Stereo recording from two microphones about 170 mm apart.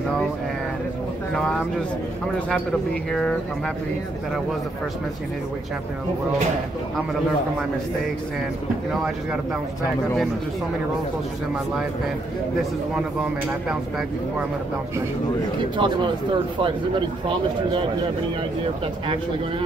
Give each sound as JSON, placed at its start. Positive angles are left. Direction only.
{"t": 1.3, "sound": "speech", "side_deg": 5}
{"t": 8.9, "sound": "speech", "side_deg": -5}
{"t": 15.8, "sound": "speech", "side_deg": -30}